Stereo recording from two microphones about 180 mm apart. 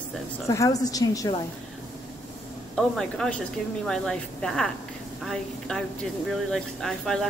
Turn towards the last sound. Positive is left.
turn(degrees=0)  # may be behind; listen again after turning